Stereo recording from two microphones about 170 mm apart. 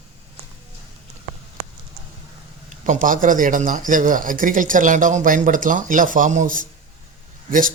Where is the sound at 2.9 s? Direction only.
50° right (ahead or behind).